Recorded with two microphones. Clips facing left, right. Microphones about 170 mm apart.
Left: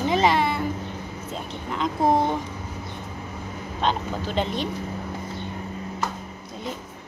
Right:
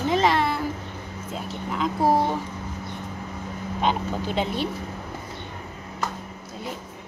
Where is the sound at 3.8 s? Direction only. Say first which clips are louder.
Even; 10° right (ahead or behind).